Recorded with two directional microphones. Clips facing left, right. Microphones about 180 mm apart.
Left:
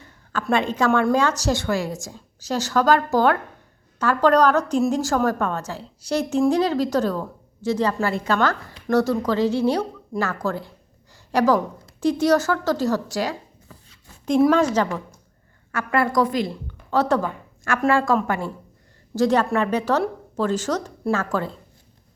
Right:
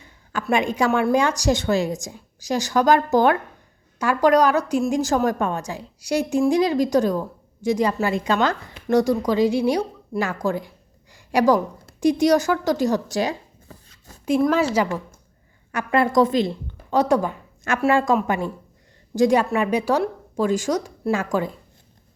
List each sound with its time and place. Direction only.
0.5 s a woman's voice: 15° right (ahead or behind)
11.1 s a sound: 15° right (ahead or behind)
11.9 s a woman's voice: 15° right (ahead or behind)
14.8 s a woman's voice: 10° right (ahead or behind)